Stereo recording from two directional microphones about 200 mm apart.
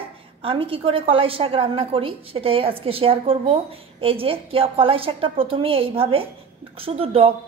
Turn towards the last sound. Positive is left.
turn(degrees=-30)  # may be behind; listen again after turning